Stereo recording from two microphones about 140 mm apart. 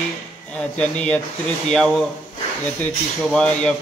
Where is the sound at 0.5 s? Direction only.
10° left (ahead or behind).